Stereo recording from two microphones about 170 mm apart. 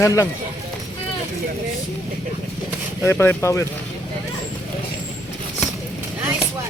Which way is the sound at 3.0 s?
15° left (ahead or behind).